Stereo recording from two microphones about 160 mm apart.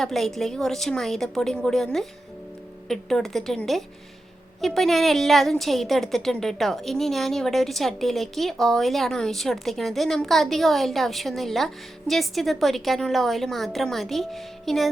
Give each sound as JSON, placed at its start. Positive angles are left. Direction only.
{"t": 0.0, "sound": "a woman's voice", "side_deg": 0}